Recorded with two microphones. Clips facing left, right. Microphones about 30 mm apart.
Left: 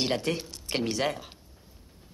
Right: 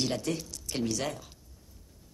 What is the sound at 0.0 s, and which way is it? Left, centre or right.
Speech, left.